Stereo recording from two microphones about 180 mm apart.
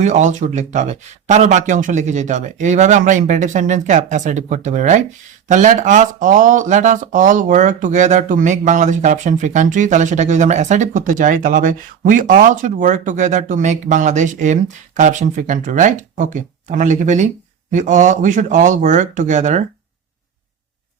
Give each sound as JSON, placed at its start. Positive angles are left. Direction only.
{"t": 0.0, "sound": "speech", "side_deg": -40}